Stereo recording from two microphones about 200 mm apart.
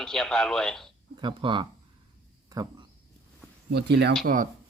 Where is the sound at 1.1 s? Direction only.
25° right (ahead or behind).